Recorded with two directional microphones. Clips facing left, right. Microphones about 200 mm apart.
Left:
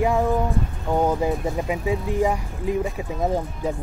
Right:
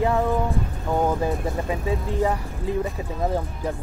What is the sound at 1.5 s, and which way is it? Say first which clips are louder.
Speech: left 2 dB; 15° left (ahead or behind).